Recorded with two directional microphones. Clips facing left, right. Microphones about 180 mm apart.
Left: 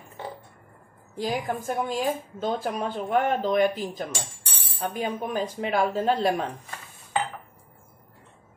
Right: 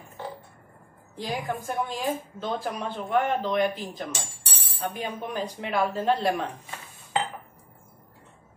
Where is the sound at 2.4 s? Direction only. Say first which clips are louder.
Left 4 dB; 45° left (ahead or behind).